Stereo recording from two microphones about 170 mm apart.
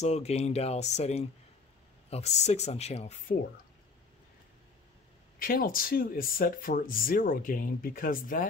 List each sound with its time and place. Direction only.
0.0 s speech: 40° left (ahead or behind)
5.4 s speech: 60° left (ahead or behind)